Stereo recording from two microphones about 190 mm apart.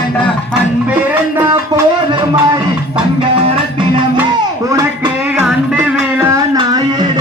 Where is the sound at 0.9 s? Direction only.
10° right (ahead or behind).